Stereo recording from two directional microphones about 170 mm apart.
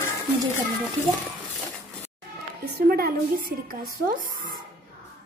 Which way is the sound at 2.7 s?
60° right (ahead or behind).